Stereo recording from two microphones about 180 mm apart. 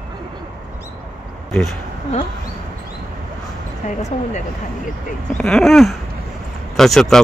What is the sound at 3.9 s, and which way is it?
Speech, 40° left (ahead or behind).